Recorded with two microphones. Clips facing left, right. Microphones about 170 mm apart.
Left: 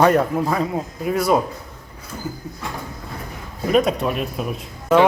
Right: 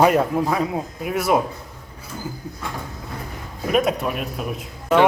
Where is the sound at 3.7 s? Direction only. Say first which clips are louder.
Left 2 dB; 5° right (ahead or behind).